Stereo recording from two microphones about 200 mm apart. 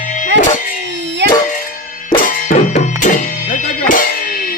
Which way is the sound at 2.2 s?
40° left (ahead or behind).